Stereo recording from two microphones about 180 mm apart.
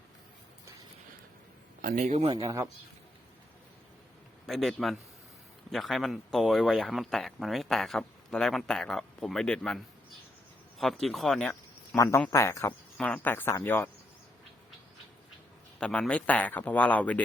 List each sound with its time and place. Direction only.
1.8 s speech: 45° right (ahead or behind)
2.3 s speech: 20° right (ahead or behind)
4.4 s speech: centre (ahead or behind)
11.9 s speech: 15° left (ahead or behind)
15.8 s speech: 5° left (ahead or behind)